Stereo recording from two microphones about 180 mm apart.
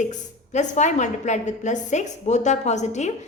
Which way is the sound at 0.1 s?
45° left (ahead or behind).